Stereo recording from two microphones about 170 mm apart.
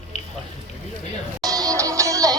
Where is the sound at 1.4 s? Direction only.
20° right (ahead or behind).